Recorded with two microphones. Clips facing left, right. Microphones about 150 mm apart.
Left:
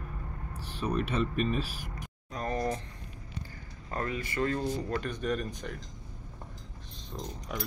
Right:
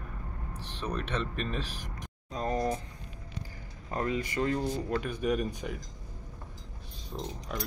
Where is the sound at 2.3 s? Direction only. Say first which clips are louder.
Right 2 dB; 20° right (ahead or behind).